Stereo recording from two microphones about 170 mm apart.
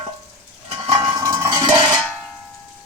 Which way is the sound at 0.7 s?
30° right (ahead or behind).